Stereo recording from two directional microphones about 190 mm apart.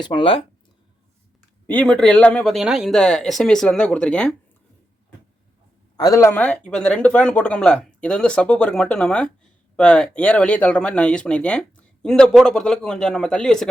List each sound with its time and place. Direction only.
0.0 s speech: 25° left (ahead or behind)
1.6 s speech: 5° left (ahead or behind)
6.0 s speech: 15° left (ahead or behind)